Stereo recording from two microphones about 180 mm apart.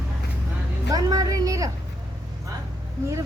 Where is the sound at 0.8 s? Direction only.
20° right (ahead or behind).